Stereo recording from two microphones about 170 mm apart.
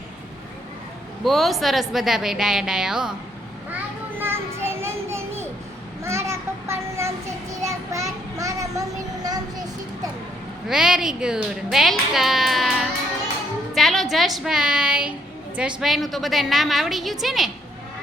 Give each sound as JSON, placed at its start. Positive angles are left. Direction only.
{"t": 1.2, "sound": "speech", "side_deg": 0}
{"t": 4.2, "sound": "child singing", "side_deg": -15}
{"t": 10.7, "sound": "speech", "side_deg": -5}